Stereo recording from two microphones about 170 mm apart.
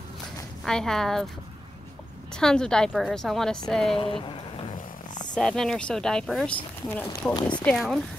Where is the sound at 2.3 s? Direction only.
5° left (ahead or behind).